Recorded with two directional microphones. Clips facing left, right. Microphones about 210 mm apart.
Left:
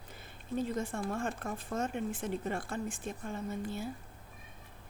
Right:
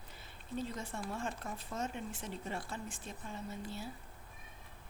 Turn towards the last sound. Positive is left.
turn(degrees=50)  # may be behind; listen again after turning